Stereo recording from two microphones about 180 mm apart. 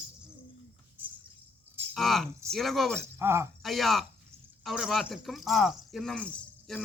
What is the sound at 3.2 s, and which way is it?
Speech, 15° right (ahead or behind).